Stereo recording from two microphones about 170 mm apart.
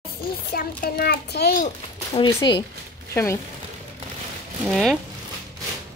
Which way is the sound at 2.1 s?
25° left (ahead or behind).